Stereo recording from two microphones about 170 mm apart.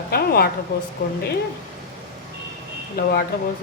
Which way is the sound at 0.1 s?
65° left (ahead or behind).